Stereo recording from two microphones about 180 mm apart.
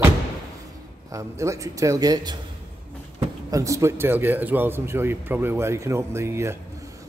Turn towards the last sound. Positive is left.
turn(degrees=-15)  # may be behind; listen again after turning